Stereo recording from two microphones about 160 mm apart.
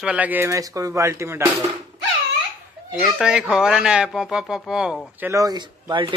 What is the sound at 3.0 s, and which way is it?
Speech, 5° right (ahead or behind).